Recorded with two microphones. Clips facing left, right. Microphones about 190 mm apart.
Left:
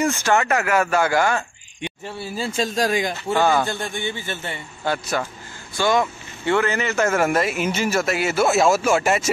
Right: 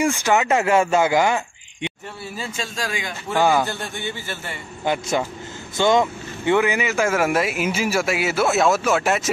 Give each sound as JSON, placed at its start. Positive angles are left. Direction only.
{"t": 0.0, "sound": "speech", "side_deg": -15}
{"t": 2.3, "sound": "speech", "side_deg": 35}
{"t": 3.3, "sound": "speech", "side_deg": -15}
{"t": 3.8, "sound": "a man's voice", "side_deg": 15}
{"t": 4.9, "sound": "speech", "side_deg": -15}